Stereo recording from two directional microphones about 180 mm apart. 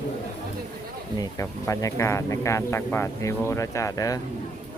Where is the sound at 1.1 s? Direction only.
20° left (ahead or behind).